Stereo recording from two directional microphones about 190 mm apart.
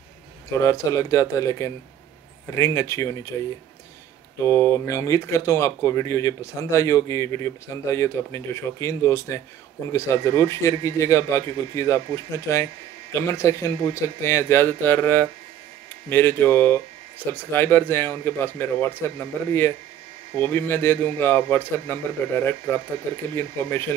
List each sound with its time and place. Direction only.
0.5 s speech: 15° left (ahead or behind)
4.7 s speech: 15° left (ahead or behind)